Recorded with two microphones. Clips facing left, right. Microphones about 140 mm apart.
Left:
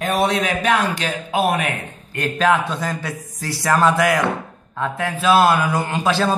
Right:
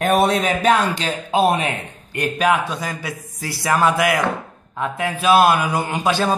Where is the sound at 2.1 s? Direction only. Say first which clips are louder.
Even; 15° right (ahead or behind).